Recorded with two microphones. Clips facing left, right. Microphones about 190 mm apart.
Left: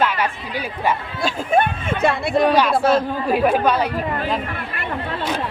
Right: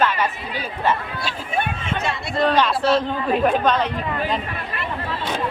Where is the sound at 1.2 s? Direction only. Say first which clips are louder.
Left 7 dB; 55° left (ahead or behind).